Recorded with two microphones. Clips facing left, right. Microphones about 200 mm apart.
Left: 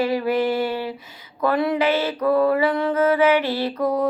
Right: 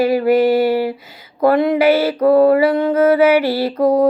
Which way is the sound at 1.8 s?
65° right (ahead or behind).